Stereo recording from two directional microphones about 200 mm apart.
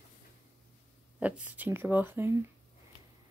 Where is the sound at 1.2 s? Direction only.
5° right (ahead or behind).